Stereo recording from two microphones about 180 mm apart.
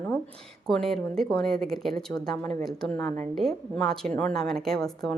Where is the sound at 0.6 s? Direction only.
5° left (ahead or behind).